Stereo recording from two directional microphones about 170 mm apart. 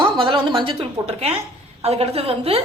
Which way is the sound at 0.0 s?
30° right (ahead or behind).